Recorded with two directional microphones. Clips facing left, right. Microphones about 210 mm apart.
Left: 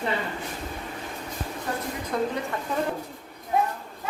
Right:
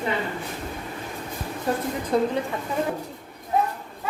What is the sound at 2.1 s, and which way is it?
Speech, 25° right (ahead or behind).